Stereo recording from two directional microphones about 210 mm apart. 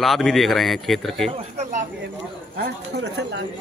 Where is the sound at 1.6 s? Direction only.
35° right (ahead or behind).